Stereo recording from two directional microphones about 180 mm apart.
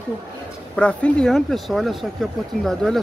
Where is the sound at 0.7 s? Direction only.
5° left (ahead or behind).